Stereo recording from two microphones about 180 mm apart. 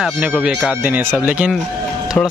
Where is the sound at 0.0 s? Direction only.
5° right (ahead or behind).